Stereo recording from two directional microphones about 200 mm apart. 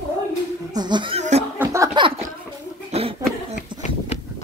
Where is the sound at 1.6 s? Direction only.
15° right (ahead or behind).